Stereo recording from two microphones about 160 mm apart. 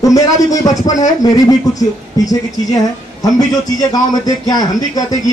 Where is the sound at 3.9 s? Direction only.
25° left (ahead or behind).